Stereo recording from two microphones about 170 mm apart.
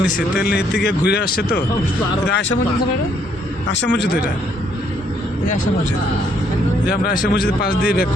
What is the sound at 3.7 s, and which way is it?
Speech, 90° left.